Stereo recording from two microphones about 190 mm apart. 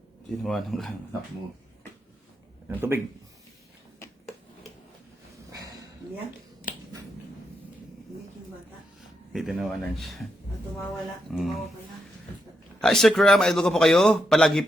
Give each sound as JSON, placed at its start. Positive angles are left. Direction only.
{"t": 0.4, "sound": "a man's voice", "side_deg": 0}
{"t": 2.6, "sound": "a man's voice", "side_deg": -10}
{"t": 5.5, "sound": "a sound", "side_deg": -20}
{"t": 6.7, "sound": "finger snapping", "side_deg": 45}
{"t": 9.3, "sound": "a man's voice", "side_deg": 0}
{"t": 11.3, "sound": "a man's voice", "side_deg": 0}
{"t": 12.8, "sound": "a man's voice", "side_deg": 0}